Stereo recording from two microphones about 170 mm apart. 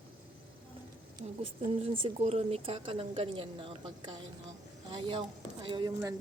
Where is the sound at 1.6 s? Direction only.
35° right (ahead or behind).